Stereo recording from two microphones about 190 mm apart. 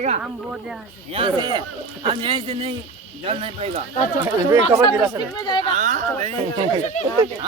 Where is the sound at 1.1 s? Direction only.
25° right (ahead or behind).